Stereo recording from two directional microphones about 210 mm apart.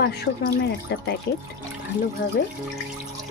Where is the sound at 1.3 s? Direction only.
55° left (ahead or behind).